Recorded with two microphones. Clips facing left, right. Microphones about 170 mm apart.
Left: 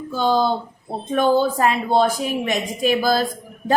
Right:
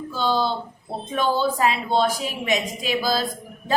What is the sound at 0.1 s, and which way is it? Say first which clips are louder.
A woman's voice: left 4 dB; 50° left (ahead or behind).